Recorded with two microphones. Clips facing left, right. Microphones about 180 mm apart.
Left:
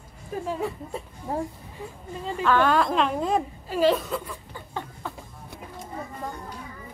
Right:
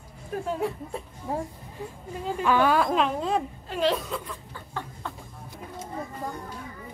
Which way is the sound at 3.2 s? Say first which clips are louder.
Left 2 dB; 5° left (ahead or behind).